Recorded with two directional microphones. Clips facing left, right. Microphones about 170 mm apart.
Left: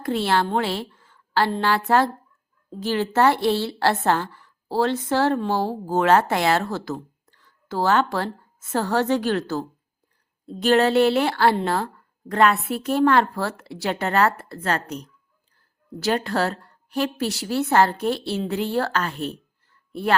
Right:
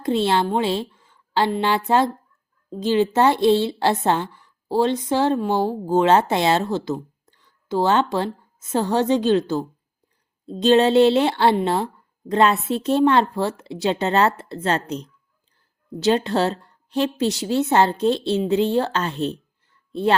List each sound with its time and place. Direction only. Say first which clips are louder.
0.0 s speech: right 2 dB; 20° right (ahead or behind)
0.4 s a sound: right 3 dB; 15° right (ahead or behind)
1.6 s a woman's voice: even; 20° right (ahead or behind)